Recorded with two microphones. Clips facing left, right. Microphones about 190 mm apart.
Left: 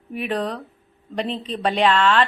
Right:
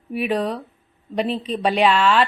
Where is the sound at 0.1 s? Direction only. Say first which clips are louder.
Right 3 dB; 10° right (ahead or behind).